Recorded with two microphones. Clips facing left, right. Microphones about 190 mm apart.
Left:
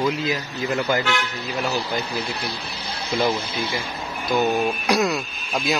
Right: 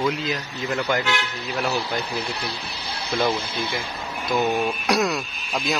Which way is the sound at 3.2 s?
15° left (ahead or behind).